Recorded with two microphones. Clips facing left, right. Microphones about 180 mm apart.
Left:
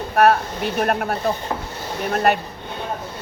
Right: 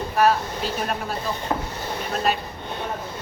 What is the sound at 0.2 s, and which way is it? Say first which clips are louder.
Speech: left 4 dB; 60° left (ahead or behind).